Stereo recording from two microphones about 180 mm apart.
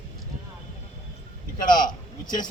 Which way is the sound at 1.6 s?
25° left (ahead or behind).